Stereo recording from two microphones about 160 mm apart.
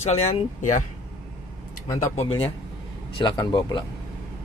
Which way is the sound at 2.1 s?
35° left (ahead or behind).